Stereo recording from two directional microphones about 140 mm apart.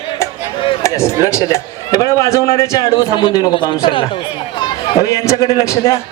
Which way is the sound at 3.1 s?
40° left (ahead or behind).